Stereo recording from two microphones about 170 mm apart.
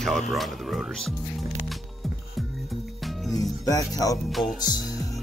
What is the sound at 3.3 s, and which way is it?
Music, 20° left (ahead or behind).